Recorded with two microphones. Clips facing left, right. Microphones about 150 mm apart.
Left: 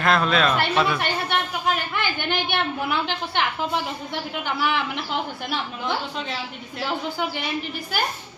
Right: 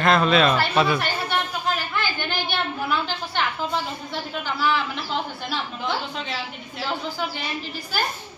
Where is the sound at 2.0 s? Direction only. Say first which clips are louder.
Left 1 dB; 20° left (ahead or behind).